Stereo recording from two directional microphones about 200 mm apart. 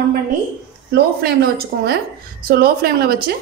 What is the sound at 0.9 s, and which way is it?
A woman's voice, 50° right (ahead or behind).